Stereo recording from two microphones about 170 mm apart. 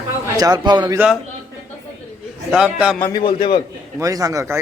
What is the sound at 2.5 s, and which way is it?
Speech, 5° right (ahead or behind).